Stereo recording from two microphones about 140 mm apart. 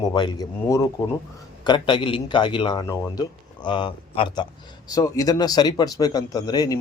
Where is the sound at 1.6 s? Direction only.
35° left (ahead or behind).